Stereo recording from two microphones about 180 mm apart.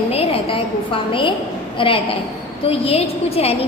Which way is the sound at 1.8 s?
30° left (ahead or behind).